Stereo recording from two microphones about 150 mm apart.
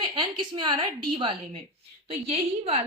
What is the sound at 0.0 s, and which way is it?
Speech, 30° right (ahead or behind).